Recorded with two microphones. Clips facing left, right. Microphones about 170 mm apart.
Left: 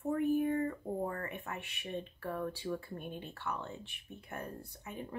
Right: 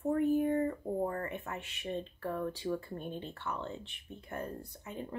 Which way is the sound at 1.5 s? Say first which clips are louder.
Right 2 dB; 15° left (ahead or behind).